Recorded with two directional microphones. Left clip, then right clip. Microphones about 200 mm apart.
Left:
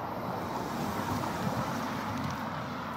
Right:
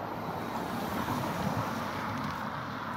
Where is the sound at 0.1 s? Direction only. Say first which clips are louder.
Left 1 dB; 55° right (ahead or behind).